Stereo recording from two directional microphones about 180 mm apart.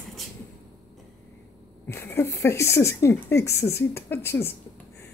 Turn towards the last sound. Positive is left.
turn(degrees=10)  # may be behind; listen again after turning